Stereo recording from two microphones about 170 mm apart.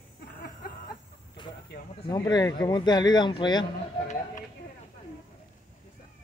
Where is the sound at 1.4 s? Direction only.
25° left (ahead or behind).